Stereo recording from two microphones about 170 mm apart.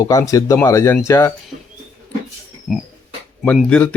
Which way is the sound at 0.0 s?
20° left (ahead or behind).